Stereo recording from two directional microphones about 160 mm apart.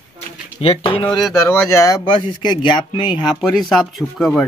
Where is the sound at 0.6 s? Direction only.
35° left (ahead or behind).